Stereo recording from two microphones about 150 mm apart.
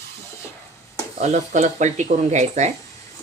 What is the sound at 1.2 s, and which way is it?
Speech, 50° right (ahead or behind).